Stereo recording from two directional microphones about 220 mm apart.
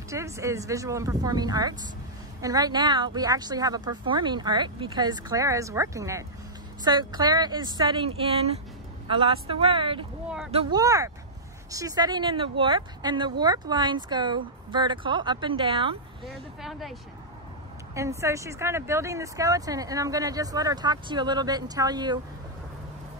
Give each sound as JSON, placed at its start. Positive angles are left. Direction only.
{"t": 0.1, "sound": "speech", "side_deg": -15}
{"t": 16.6, "sound": "speech", "side_deg": 0}
{"t": 17.9, "sound": "speech", "side_deg": -15}